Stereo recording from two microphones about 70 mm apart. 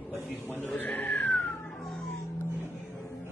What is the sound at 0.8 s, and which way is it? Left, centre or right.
Speech, left.